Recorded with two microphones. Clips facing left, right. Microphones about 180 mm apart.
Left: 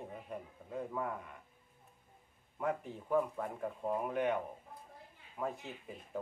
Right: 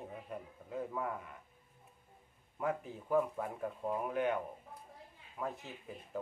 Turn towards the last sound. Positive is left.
turn(degrees=0)  # may be behind; listen again after turning